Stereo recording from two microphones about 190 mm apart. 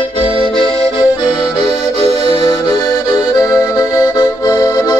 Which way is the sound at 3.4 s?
15° left (ahead or behind).